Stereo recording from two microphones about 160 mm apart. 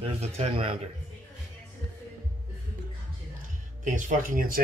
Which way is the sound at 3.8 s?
55° right (ahead or behind).